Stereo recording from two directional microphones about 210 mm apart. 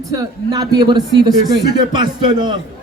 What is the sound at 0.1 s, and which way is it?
A man's voice, 15° right (ahead or behind).